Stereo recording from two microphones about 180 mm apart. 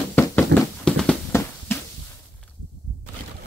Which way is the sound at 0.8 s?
5° left (ahead or behind).